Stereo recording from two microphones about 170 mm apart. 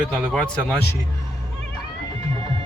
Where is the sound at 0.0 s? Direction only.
5° left (ahead or behind).